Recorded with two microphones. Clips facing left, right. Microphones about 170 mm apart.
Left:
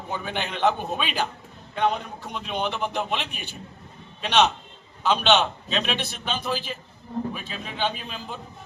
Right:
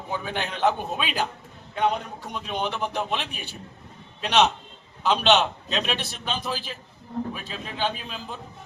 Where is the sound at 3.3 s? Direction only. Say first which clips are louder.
Even; 40° right (ahead or behind).